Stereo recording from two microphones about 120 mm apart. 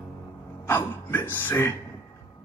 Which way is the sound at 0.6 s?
20° left (ahead or behind).